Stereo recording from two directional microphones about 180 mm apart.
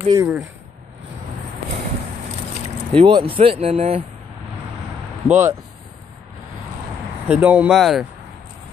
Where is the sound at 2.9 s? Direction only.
25° right (ahead or behind).